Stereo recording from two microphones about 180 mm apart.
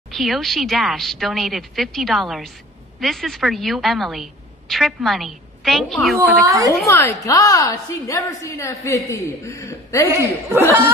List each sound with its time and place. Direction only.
0.1 s a woman's voice: centre (ahead or behind)
6.1 s a woman's voice: 20° right (ahead or behind)
6.9 s a woman's voice: 15° left (ahead or behind)
10.1 s speech: 15° right (ahead or behind)